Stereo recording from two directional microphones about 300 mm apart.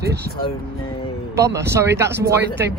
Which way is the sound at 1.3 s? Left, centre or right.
Centre.